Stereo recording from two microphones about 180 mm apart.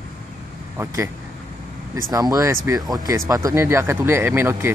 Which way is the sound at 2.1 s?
20° right (ahead or behind).